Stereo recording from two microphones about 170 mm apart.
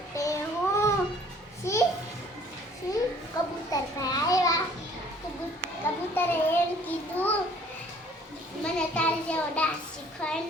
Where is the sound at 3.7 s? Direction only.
20° left (ahead or behind).